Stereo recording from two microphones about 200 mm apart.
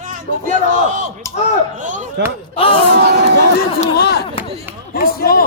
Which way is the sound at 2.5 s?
30° left (ahead or behind).